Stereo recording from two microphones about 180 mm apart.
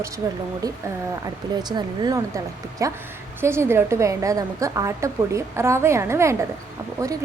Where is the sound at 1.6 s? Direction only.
25° right (ahead or behind).